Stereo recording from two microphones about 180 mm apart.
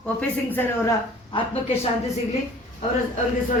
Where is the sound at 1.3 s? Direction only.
30° left (ahead or behind).